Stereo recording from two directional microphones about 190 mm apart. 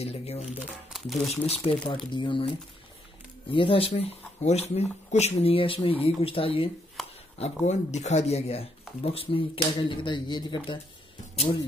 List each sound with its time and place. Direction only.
0.0 s speech: 35° left (ahead or behind)
0.9 s speech: centre (ahead or behind)
1.3 s speech: 30° left (ahead or behind)